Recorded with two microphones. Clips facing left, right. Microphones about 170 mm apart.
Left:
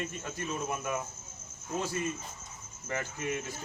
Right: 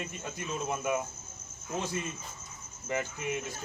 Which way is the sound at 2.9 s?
15° right (ahead or behind).